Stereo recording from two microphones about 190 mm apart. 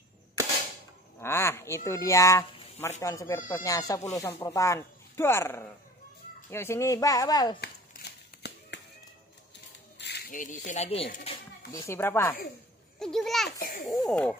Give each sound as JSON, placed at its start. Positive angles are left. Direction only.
{"t": 1.2, "sound": "speech", "side_deg": 15}
{"t": 7.6, "sound": "a sound", "side_deg": 60}
{"t": 9.9, "sound": "a sound", "side_deg": 60}
{"t": 10.3, "sound": "speech", "side_deg": 45}
{"t": 11.7, "sound": "a child's voice", "side_deg": 15}
{"t": 13.6, "sound": "a child's voice", "side_deg": 50}
{"t": 14.0, "sound": "a child's voice", "side_deg": 5}